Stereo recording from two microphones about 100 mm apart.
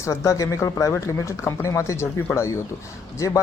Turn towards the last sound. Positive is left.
turn(degrees=30)  # may be behind; listen again after turning